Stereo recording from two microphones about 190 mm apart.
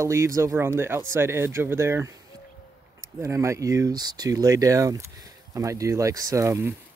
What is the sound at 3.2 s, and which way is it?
Speech, 15° right (ahead or behind).